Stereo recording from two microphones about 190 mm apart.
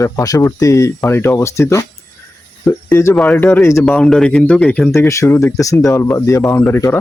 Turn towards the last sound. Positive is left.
turn(degrees=10)  # may be behind; listen again after turning